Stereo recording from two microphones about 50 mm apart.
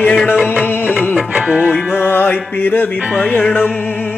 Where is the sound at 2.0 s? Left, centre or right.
Left.